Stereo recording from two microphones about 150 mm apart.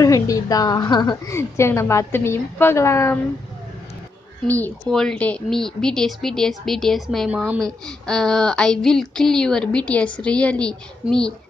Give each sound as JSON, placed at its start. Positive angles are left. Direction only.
{"t": 0.0, "sound": "a woman's voice", "side_deg": 25}
{"t": 4.5, "sound": "child singing", "side_deg": 10}